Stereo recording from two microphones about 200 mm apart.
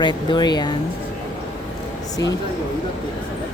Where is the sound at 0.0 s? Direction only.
25° left (ahead or behind).